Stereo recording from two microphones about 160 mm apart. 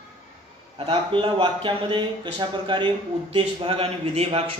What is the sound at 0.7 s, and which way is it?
A man's voice, 35° right (ahead or behind).